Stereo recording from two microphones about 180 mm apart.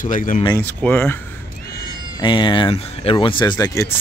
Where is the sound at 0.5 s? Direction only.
10° left (ahead or behind).